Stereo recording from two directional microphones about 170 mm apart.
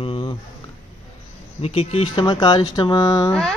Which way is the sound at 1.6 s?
35° left (ahead or behind).